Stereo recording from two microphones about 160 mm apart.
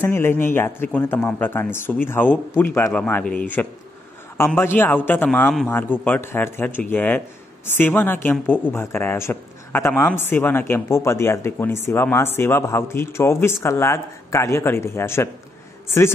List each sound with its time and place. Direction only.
0.0 s a man's voice: 15° left (ahead or behind)